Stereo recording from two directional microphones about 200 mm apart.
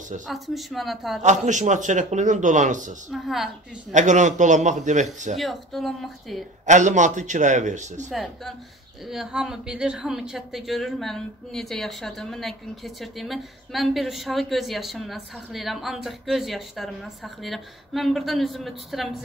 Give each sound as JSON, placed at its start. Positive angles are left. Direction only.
{"t": 0.3, "sound": "a woman's voice", "side_deg": 0}
{"t": 1.2, "sound": "a man's voice", "side_deg": -35}
{"t": 3.1, "sound": "a woman's voice", "side_deg": 0}
{"t": 3.9, "sound": "a man's voice", "side_deg": -35}
{"t": 5.4, "sound": "a woman's voice", "side_deg": 0}
{"t": 6.6, "sound": "a man's voice", "side_deg": -35}
{"t": 8.1, "sound": "a woman's voice", "side_deg": 0}